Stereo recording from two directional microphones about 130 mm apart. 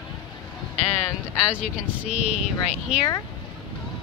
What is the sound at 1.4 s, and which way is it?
Speech, 10° right (ahead or behind).